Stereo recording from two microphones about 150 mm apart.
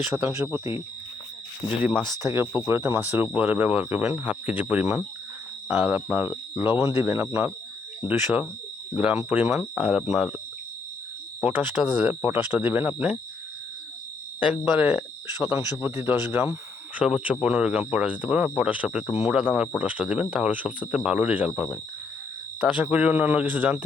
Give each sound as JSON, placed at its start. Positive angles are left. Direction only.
{"t": 0.1, "sound": "speech", "side_deg": -15}
{"t": 1.8, "sound": "speech", "side_deg": -10}
{"t": 11.3, "sound": "speech", "side_deg": -10}
{"t": 14.3, "sound": "speech", "side_deg": -10}